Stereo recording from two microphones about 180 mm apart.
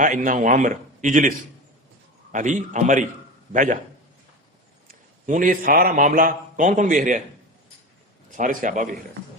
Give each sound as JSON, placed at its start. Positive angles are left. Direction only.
{"t": 0.0, "sound": "a man's voice", "side_deg": -45}
{"t": 2.3, "sound": "a man's voice", "side_deg": -45}
{"t": 4.9, "sound": "a man's voice", "side_deg": -45}
{"t": 8.4, "sound": "a man's voice", "side_deg": -45}